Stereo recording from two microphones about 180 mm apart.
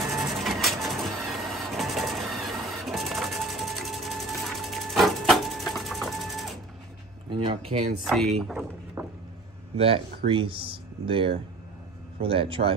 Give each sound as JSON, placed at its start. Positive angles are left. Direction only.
{"t": 0.1, "sound": "vehicle", "side_deg": 0}
{"t": 7.2, "sound": "speech", "side_deg": -30}
{"t": 8.4, "sound": "speech", "side_deg": 0}
{"t": 9.0, "sound": "vehicle", "side_deg": -15}
{"t": 9.8, "sound": "speech", "side_deg": -30}